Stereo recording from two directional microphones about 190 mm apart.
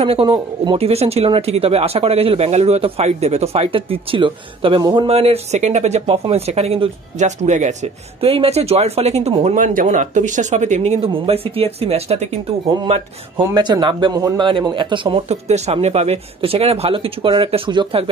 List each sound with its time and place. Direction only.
0.0 s speech: 30° right (ahead or behind)
13.5 s speech: 25° right (ahead or behind)